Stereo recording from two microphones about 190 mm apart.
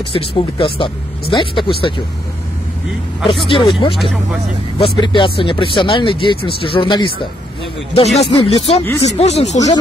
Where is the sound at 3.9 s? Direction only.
Centre (ahead or behind).